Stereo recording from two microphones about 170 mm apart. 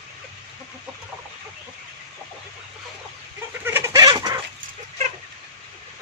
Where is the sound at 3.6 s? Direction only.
15° right (ahead or behind).